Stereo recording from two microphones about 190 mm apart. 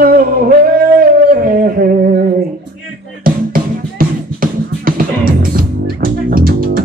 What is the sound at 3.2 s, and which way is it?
Music, 50° right (ahead or behind).